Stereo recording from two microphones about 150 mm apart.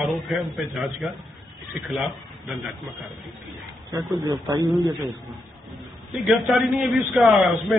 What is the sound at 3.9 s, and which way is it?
Speech, 25° right (ahead or behind).